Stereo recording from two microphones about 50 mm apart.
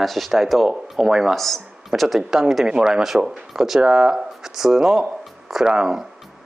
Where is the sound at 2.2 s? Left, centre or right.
Centre.